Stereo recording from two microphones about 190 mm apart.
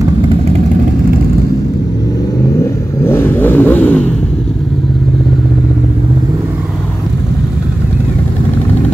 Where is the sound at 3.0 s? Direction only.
10° left (ahead or behind).